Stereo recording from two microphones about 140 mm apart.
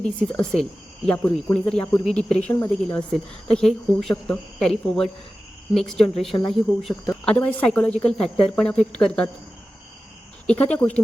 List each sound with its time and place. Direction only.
0.0 s a woman's voice: 5° left (ahead or behind)
10.4 s speech: 10° left (ahead or behind)